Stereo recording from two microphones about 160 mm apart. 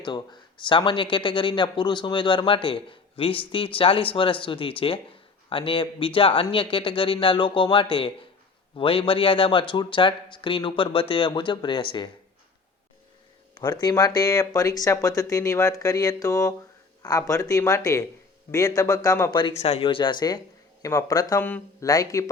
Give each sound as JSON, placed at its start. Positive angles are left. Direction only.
{"t": 0.0, "sound": "speech", "side_deg": 25}
{"t": 13.6, "sound": "speech", "side_deg": 25}
{"t": 21.4, "sound": "speech", "side_deg": 10}
{"t": 21.8, "sound": "speech", "side_deg": 20}